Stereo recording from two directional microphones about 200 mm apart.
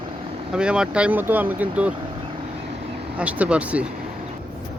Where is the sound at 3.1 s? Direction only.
5° right (ahead or behind).